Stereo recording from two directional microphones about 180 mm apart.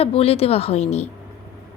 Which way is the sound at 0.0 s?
35° left (ahead or behind).